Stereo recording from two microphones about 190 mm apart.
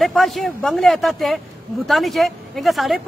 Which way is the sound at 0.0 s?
Centre (ahead or behind).